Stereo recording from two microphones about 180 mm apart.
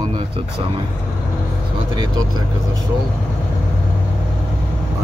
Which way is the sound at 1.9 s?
25° right (ahead or behind).